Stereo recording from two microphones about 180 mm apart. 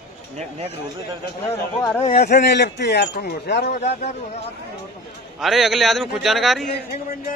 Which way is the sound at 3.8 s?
40° left (ahead or behind).